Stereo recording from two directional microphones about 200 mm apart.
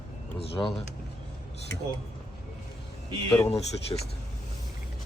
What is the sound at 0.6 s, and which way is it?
Speech, 15° left (ahead or behind).